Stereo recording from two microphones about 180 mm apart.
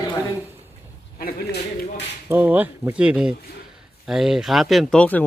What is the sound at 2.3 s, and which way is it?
Speech, 10° right (ahead or behind).